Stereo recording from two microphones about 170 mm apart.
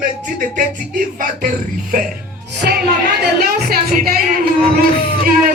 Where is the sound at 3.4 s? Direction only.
60° right (ahead or behind).